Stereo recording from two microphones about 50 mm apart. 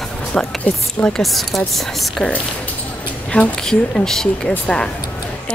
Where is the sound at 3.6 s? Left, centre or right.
Centre.